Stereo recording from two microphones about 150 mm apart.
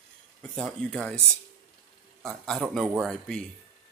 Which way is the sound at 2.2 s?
Centre (ahead or behind).